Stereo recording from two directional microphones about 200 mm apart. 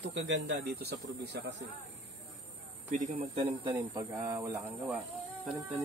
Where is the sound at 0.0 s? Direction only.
65° right (ahead or behind).